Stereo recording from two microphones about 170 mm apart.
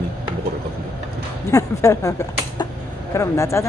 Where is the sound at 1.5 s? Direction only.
15° left (ahead or behind).